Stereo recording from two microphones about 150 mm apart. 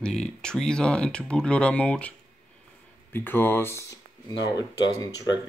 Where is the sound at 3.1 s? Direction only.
15° left (ahead or behind).